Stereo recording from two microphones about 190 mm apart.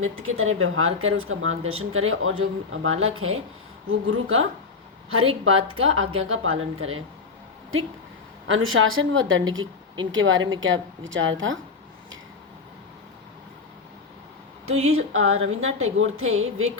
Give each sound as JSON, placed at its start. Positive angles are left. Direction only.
{"t": 0.0, "sound": "speech", "side_deg": -90}
{"t": 5.5, "sound": "speech", "side_deg": -90}
{"t": 8.4, "sound": "speech", "side_deg": -90}
{"t": 14.8, "sound": "speech", "side_deg": -90}